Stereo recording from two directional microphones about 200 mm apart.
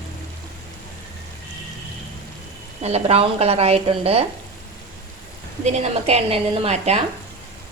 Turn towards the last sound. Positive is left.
turn(degrees=-30)  # may be behind; listen again after turning